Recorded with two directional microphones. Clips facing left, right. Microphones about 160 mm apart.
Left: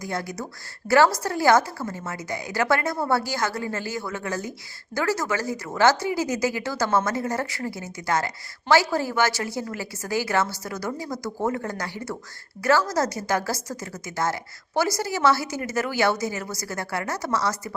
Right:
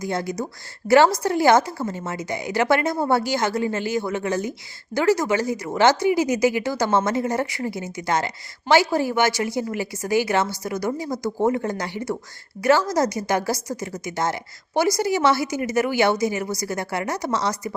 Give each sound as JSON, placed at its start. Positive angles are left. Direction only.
{"t": 0.0, "sound": "a woman's voice", "side_deg": -20}
{"t": 14.8, "sound": "a woman's voice", "side_deg": -15}